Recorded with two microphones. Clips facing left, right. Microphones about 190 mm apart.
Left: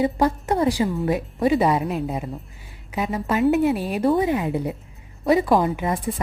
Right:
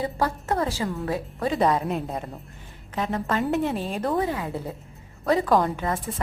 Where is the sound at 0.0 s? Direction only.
15° left (ahead or behind).